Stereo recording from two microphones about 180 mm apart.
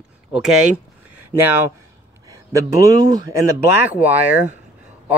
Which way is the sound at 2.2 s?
20° right (ahead or behind).